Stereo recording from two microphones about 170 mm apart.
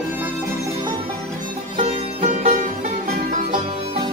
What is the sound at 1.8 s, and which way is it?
Music, 45° right (ahead or behind).